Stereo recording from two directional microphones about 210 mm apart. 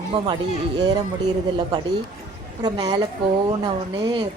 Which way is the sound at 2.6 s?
20° right (ahead or behind).